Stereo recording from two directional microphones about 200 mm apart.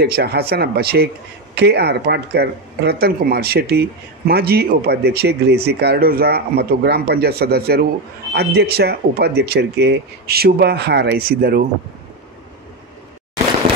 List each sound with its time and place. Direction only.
0.0 s speech: 55° right (ahead or behind)